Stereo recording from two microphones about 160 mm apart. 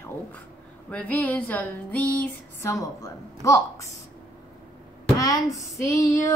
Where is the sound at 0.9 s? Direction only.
10° left (ahead or behind).